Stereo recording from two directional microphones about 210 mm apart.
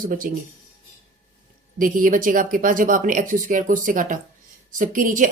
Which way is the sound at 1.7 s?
40° right (ahead or behind).